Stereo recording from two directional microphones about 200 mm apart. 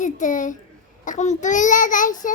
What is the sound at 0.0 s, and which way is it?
Child singing, 40° left (ahead or behind).